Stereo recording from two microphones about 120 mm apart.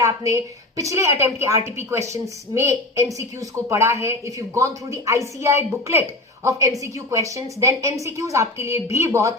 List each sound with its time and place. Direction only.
0.0 s a woman's voice: 25° right (ahead or behind)